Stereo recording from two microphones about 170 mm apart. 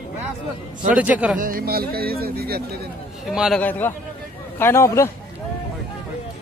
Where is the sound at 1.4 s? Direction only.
55° right (ahead or behind).